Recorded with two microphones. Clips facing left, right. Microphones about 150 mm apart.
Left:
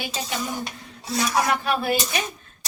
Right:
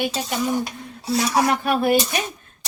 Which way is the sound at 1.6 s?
50° right (ahead or behind).